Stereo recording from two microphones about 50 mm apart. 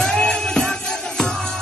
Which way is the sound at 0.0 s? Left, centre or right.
Centre.